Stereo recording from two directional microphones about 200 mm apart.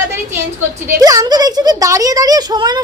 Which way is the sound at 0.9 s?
20° right (ahead or behind).